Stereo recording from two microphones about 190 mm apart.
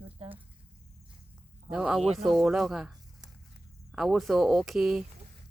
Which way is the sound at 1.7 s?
5° right (ahead or behind).